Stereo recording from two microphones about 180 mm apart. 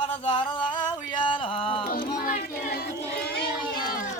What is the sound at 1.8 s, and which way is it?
Music, 60° left (ahead or behind).